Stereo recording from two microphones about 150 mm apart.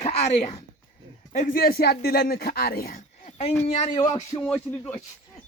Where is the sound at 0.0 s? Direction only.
40° left (ahead or behind).